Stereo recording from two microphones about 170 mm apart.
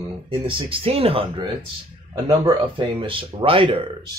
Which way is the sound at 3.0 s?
30° right (ahead or behind).